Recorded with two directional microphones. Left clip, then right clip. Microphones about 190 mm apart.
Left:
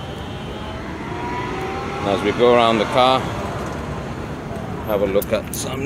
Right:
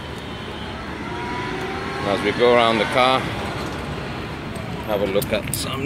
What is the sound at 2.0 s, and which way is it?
Speech, 10° left (ahead or behind).